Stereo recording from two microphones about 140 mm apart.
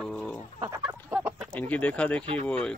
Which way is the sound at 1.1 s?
10° right (ahead or behind).